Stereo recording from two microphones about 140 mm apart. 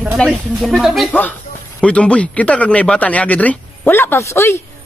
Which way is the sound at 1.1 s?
10° left (ahead or behind).